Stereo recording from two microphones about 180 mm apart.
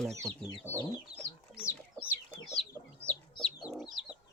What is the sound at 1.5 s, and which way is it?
Chicken, 10° left (ahead or behind).